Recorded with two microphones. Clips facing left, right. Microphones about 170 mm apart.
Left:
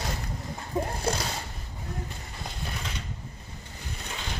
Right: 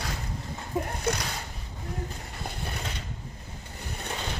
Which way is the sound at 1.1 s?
30° left (ahead or behind).